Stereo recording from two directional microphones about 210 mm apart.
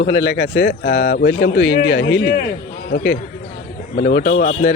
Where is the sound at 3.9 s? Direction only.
45° left (ahead or behind).